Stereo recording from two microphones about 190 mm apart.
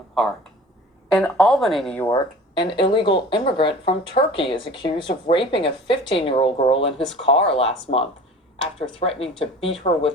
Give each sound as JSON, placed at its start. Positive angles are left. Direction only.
{"t": 1.1, "sound": "speech", "side_deg": 0}
{"t": 2.0, "sound": "speech", "side_deg": 20}